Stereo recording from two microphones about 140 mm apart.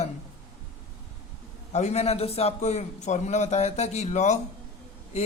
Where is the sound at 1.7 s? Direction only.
55° left (ahead or behind).